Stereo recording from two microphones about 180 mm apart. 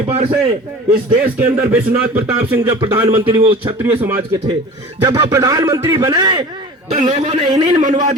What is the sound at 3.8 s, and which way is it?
Speech, 10° right (ahead or behind).